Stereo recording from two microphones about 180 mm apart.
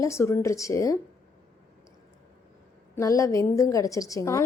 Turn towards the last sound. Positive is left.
turn(degrees=15)  # may be behind; listen again after turning